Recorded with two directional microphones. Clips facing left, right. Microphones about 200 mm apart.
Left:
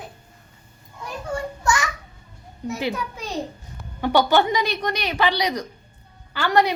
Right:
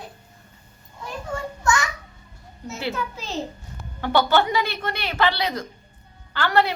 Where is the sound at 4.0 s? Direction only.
15° left (ahead or behind).